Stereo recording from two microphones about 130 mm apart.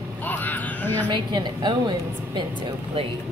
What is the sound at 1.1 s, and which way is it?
A woman's voice, 35° right (ahead or behind).